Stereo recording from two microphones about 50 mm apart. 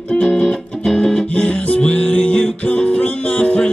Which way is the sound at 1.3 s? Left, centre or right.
Left.